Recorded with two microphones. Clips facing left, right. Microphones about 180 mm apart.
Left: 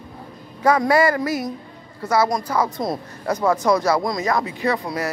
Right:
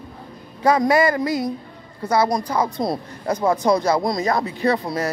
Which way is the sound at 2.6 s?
30° right (ahead or behind).